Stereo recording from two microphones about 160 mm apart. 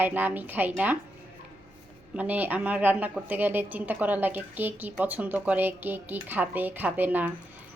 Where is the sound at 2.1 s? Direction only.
10° right (ahead or behind).